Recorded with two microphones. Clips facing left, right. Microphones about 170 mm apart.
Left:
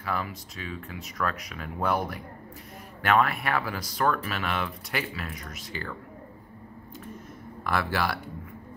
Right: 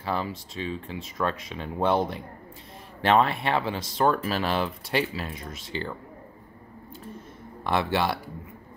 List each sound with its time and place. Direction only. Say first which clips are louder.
0.0 s speech: right 3 dB; 30° right (ahead or behind)
7.6 s speech: right 3 dB; 25° right (ahead or behind)